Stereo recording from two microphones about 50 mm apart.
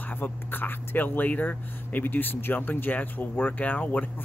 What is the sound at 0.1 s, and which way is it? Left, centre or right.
Speech, left.